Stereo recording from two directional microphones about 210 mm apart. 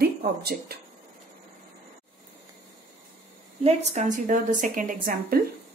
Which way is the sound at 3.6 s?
35° right (ahead or behind).